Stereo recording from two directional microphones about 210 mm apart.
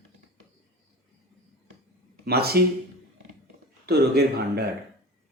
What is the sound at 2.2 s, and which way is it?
Speech, 50° right (ahead or behind).